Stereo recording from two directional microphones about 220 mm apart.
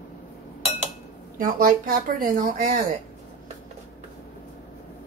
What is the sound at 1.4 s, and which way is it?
Speech, 40° right (ahead or behind).